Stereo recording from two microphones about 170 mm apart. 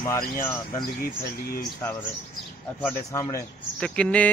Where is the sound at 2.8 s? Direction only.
10° left (ahead or behind).